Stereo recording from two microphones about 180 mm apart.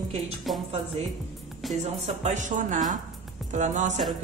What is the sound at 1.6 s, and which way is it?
Speech, centre (ahead or behind).